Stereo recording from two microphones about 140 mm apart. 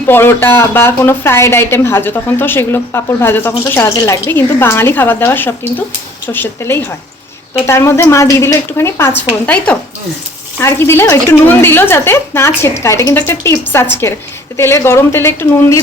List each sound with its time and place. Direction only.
0.0 s a woman's voice: 15° left (ahead or behind)
10.6 s a woman's voice: 15° left (ahead or behind)